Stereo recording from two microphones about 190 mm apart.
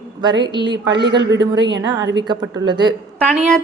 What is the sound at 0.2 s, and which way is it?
Speech, 25° right (ahead or behind).